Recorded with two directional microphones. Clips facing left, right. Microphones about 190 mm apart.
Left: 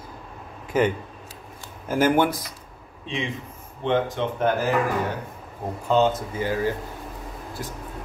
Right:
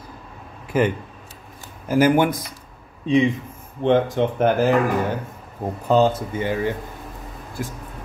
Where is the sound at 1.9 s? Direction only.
10° right (ahead or behind).